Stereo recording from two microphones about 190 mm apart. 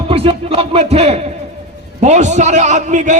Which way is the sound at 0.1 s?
30° right (ahead or behind).